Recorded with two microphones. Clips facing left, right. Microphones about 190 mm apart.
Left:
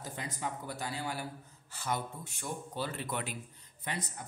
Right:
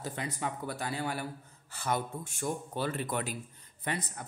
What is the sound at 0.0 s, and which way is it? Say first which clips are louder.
A man's voice: right 3 dB; 65° right (ahead or behind).